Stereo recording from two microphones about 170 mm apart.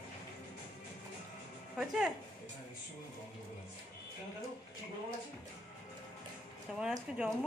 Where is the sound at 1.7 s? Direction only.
5° right (ahead or behind).